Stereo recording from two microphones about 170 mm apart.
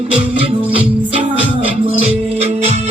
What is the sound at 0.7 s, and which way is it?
Music, 35° right (ahead or behind).